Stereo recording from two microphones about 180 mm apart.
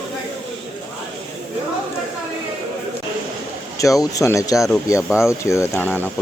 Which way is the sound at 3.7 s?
20° left (ahead or behind).